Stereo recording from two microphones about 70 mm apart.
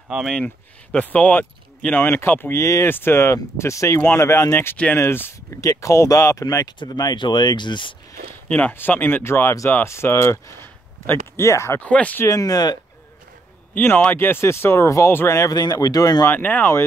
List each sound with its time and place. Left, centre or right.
0.9 s speech: left
6.4 s speech: left
8.5 s speech: left
11.8 s speech: centre
12.3 s speech: left
14.1 s speech: left
15.3 s speech: left
16.3 s speech: left